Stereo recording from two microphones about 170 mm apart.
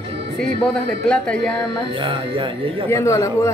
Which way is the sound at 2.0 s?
30° right (ahead or behind).